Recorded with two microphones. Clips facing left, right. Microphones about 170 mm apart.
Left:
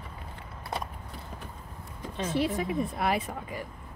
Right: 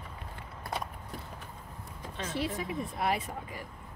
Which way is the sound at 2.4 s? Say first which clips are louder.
Left 6 dB; 70° left (ahead or behind).